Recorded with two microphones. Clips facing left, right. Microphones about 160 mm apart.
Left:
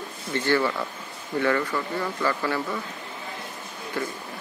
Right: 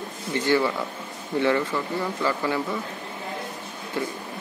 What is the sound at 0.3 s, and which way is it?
Speech, 15° right (ahead or behind).